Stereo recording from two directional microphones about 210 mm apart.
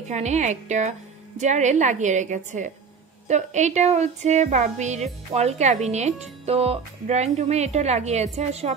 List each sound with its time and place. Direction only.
0.1 s speech: 35° right (ahead or behind)